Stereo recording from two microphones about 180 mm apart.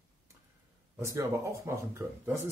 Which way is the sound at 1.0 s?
15° right (ahead or behind).